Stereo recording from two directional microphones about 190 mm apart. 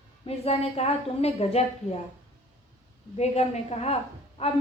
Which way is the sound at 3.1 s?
35° left (ahead or behind).